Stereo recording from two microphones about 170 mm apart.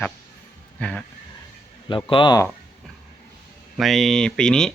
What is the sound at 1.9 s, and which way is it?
Speech, 30° left (ahead or behind).